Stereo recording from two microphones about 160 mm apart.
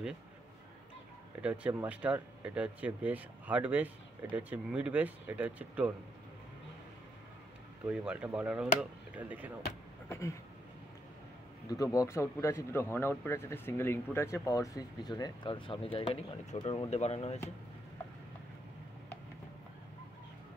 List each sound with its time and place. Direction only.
1.4 s speech: 10° right (ahead or behind)
7.8 s speech: 5° right (ahead or behind)
10.0 s speech: 20° left (ahead or behind)
11.6 s speech: 20° left (ahead or behind); by 17.4 s 40° left (ahead or behind)